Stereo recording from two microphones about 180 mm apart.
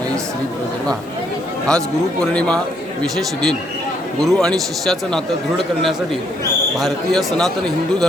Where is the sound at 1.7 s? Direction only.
5° left (ahead or behind).